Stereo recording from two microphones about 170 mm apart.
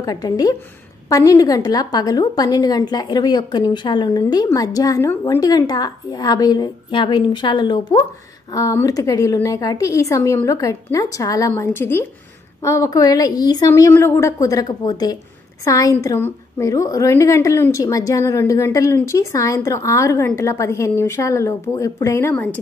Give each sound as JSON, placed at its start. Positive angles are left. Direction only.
{"t": 0.0, "sound": "a woman's voice", "side_deg": 20}